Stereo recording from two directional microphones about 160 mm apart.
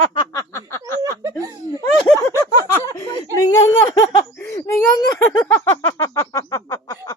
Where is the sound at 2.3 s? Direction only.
20° left (ahead or behind).